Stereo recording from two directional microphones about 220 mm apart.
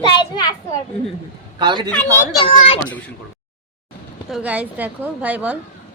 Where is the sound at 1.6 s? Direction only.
20° right (ahead or behind).